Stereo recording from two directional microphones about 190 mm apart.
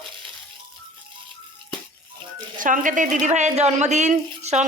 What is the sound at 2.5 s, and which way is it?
A woman's voice, 45° right (ahead or behind).